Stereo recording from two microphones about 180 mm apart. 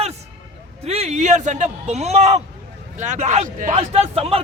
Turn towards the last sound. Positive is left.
turn(degrees=-35)  # may be behind; listen again after turning